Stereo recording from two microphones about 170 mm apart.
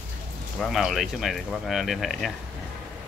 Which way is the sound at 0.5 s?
Centre (ahead or behind).